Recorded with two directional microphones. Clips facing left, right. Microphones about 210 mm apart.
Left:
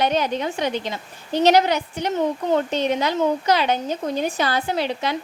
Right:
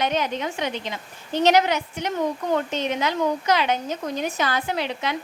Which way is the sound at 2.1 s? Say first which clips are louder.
Left 3 dB; 20° left (ahead or behind).